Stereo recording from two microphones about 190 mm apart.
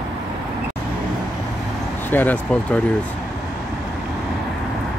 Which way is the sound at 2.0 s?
10° left (ahead or behind).